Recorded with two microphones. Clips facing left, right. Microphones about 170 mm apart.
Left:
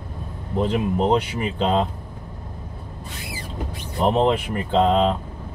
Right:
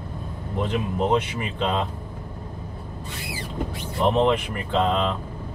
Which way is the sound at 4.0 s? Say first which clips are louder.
Left 1 dB; 30° left (ahead or behind).